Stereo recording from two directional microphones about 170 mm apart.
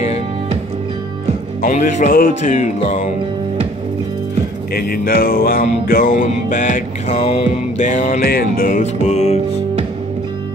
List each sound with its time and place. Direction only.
1.6 s music: 50° left (ahead or behind)
4.7 s music: 60° left (ahead or behind); by 9.4 s 40° left (ahead or behind)